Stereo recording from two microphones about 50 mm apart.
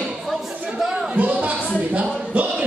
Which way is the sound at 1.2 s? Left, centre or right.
Right.